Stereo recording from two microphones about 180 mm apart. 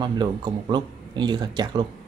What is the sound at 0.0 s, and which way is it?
Speech, 25° right (ahead or behind).